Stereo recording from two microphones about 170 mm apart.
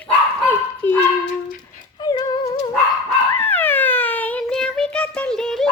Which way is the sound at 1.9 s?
25° left (ahead or behind).